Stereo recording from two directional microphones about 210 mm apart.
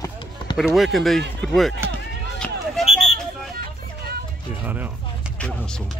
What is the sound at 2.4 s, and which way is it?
Run, centre (ahead or behind).